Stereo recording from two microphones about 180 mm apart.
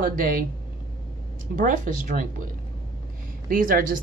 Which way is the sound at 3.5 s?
50° right (ahead or behind).